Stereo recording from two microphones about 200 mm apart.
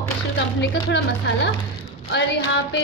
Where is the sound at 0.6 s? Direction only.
60° left (ahead or behind).